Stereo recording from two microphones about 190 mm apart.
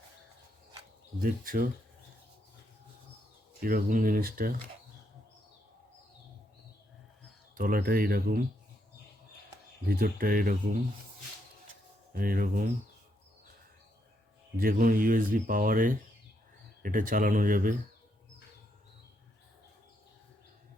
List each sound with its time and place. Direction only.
1.2 s speech: 50° right (ahead or behind)
3.6 s speech: 50° right (ahead or behind)
7.5 s speech: 50° right (ahead or behind)
9.8 s speech: 50° right (ahead or behind)
12.1 s speech: 50° right (ahead or behind)
14.5 s speech: 50° right (ahead or behind)